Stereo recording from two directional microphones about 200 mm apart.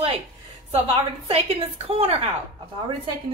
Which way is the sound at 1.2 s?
30° right (ahead or behind).